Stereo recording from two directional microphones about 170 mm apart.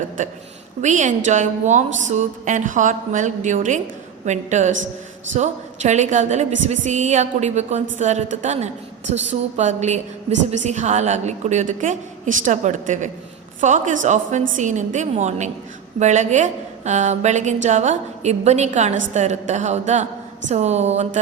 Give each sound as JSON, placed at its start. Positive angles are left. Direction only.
{"t": 0.2, "sound": "a woman's voice", "side_deg": -50}
{"t": 4.7, "sound": "a man's voice", "side_deg": -90}
{"t": 5.3, "sound": "a woman's voice", "side_deg": -45}